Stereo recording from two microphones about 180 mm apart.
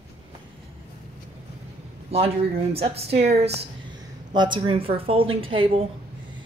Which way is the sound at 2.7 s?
35° right (ahead or behind).